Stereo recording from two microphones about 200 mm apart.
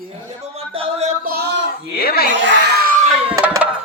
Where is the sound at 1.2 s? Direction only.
50° right (ahead or behind).